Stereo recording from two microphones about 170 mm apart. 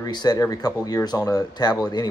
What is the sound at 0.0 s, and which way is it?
Speech, 25° left (ahead or behind).